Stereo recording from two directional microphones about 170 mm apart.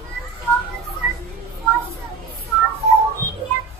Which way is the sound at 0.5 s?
15° right (ahead or behind).